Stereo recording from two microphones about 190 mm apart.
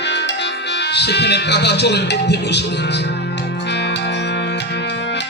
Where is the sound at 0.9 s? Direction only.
60° left (ahead or behind).